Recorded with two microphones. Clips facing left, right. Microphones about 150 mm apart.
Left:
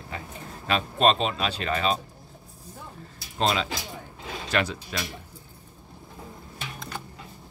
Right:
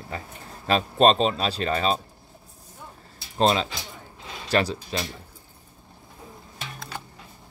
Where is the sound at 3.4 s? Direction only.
35° right (ahead or behind).